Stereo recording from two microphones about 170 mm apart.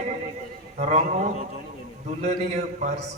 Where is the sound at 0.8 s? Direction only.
40° right (ahead or behind).